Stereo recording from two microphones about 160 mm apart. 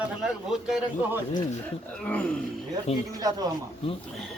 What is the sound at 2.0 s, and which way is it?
Speech, 5° left (ahead or behind).